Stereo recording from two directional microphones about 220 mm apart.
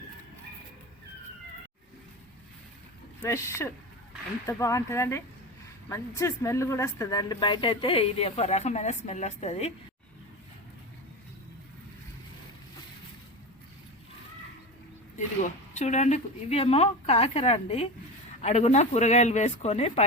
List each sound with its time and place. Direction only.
3.2 s speech: 10° left (ahead or behind); by 9.7 s 30° left (ahead or behind)
15.4 s speech: 35° left (ahead or behind)